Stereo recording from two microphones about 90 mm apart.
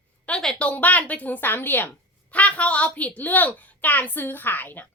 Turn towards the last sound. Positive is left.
turn(degrees=20)  # may be behind; listen again after turning